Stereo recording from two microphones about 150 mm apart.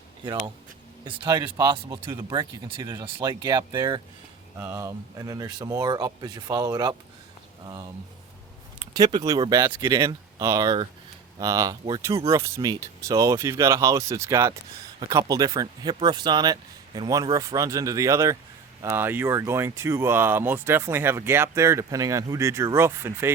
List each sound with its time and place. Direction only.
1.0 s speech: 30° right (ahead or behind)
4.5 s speech: 15° right (ahead or behind)
8.8 s speech: 30° right (ahead or behind)